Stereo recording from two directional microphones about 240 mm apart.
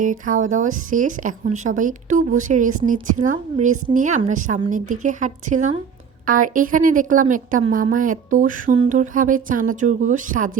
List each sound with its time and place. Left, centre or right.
0.0 s speech: right